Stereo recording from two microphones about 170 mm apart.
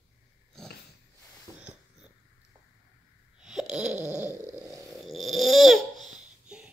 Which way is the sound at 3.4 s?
Centre (ahead or behind).